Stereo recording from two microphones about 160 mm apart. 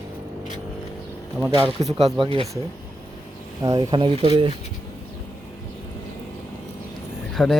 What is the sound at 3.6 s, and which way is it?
Speech, 20° right (ahead or behind).